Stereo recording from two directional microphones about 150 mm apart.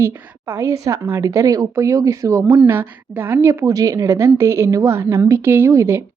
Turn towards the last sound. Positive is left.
turn(degrees=-20)  # may be behind; listen again after turning